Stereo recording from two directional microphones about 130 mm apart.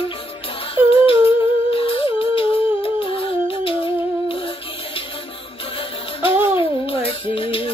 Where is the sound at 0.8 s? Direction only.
15° right (ahead or behind).